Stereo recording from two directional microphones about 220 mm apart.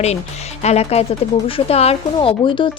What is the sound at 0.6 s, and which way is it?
A woman's voice, 30° left (ahead or behind).